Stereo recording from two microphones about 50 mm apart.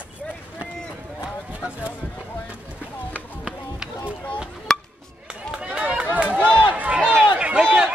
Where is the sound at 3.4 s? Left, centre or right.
Centre.